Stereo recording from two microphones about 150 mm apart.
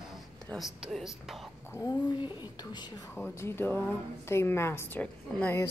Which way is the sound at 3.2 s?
15° left (ahead or behind).